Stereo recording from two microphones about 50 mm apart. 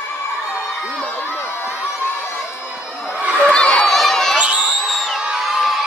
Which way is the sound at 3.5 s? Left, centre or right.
Centre.